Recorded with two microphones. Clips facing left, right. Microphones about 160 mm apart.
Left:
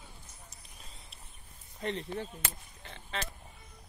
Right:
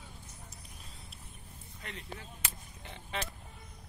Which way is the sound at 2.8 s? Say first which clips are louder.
Even; 15° right (ahead or behind).